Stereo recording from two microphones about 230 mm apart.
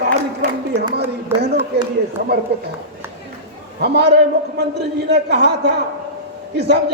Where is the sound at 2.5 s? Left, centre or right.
Right.